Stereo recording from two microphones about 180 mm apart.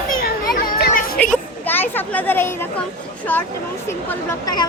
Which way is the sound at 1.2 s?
5° left (ahead or behind).